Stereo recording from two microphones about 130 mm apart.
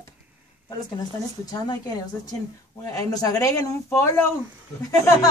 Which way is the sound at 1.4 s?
30° left (ahead or behind).